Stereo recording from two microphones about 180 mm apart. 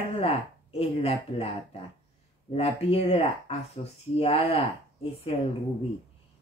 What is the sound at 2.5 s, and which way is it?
Speech, 35° left (ahead or behind).